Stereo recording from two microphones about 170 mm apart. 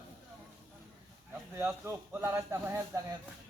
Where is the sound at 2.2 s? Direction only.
15° right (ahead or behind).